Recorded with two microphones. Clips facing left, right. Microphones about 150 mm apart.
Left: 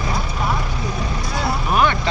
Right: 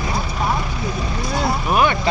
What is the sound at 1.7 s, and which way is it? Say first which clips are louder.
Vehicle: even; 10° right (ahead or behind).